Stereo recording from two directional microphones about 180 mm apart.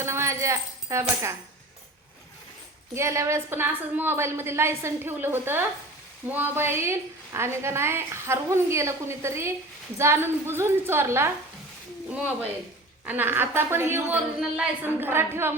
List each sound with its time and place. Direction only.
0.0 s speech: 15° right (ahead or behind)
2.9 s a woman's voice: 15° right (ahead or behind)